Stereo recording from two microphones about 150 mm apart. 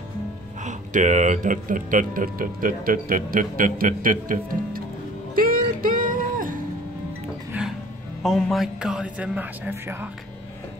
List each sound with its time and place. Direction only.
0.6 s speech: 55° right (ahead or behind); by 4.8 s 70° right (ahead or behind)
5.3 s music: 70° right (ahead or behind)
7.5 s music: 10° right (ahead or behind)
8.2 s a man's voice: centre (ahead or behind); by 10.0 s 15° right (ahead or behind)